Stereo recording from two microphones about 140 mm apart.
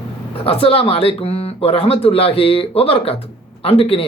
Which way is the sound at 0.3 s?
45° left (ahead or behind).